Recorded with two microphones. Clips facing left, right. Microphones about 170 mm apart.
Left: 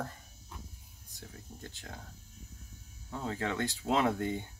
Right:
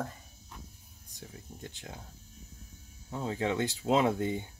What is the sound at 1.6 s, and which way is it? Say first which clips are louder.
Speech: right 2 dB; 15° right (ahead or behind).